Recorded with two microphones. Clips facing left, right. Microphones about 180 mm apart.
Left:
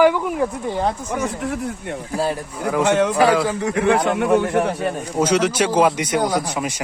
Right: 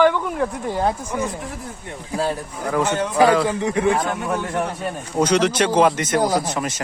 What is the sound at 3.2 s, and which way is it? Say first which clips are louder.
Speech: right 5 dB; 5° left (ahead or behind).